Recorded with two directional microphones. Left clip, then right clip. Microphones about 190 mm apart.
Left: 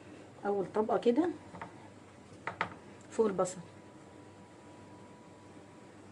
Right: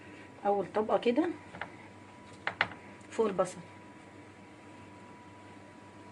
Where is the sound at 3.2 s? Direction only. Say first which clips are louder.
Right 1 dB; 20° left (ahead or behind).